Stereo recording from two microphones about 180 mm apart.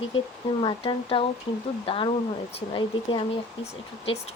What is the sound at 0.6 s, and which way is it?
A woman's voice, 30° left (ahead or behind).